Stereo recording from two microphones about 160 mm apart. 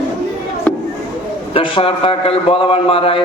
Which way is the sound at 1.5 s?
35° left (ahead or behind).